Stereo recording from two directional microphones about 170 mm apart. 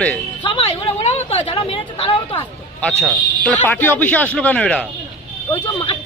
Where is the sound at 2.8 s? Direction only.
5° left (ahead or behind).